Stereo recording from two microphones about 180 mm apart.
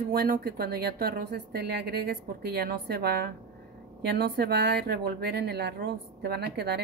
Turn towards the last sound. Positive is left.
turn(degrees=-65)  # may be behind; listen again after turning